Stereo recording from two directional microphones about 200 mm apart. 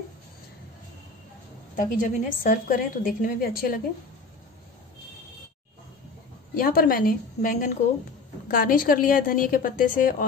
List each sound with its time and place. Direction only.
1.8 s a woman's voice: 40° left (ahead or behind)
6.5 s a woman's voice: 45° left (ahead or behind)